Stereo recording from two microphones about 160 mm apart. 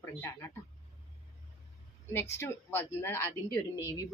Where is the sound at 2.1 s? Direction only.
15° left (ahead or behind).